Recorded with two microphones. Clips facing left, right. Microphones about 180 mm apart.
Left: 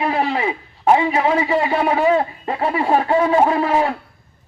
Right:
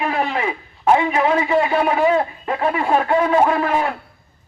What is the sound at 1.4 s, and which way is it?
A man's voice, 30° left (ahead or behind).